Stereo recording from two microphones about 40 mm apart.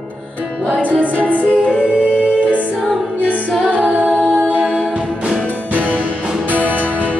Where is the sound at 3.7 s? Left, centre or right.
Right.